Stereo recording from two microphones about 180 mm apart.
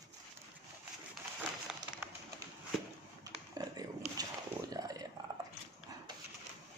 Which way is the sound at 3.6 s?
20° right (ahead or behind).